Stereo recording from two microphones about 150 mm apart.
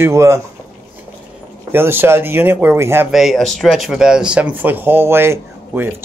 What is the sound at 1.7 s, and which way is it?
Speech, 15° right (ahead or behind).